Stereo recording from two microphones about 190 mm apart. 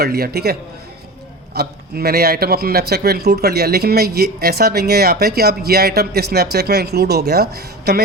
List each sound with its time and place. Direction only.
0.0 s a man's voice: 55° right (ahead or behind)
1.5 s a man's voice: 55° right (ahead or behind)